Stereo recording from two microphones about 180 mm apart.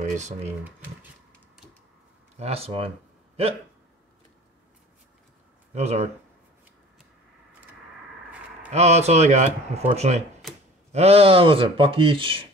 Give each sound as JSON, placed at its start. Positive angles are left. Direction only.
{"t": 0.0, "sound": "a sound", "side_deg": -45}
{"t": 2.3, "sound": "speech", "side_deg": -35}
{"t": 5.8, "sound": "speech", "side_deg": -35}
{"t": 8.6, "sound": "speech", "side_deg": -35}
{"t": 10.4, "sound": "a sound", "side_deg": 0}
{"t": 10.9, "sound": "speech", "side_deg": -35}